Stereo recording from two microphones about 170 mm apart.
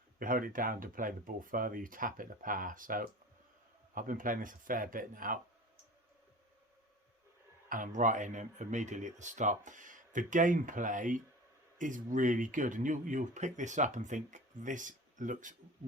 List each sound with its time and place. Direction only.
0.2 s speech: 55° right (ahead or behind)
7.7 s speech: 50° right (ahead or behind)